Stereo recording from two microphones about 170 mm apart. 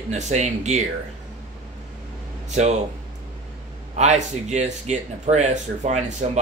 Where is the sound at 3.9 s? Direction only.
40° right (ahead or behind).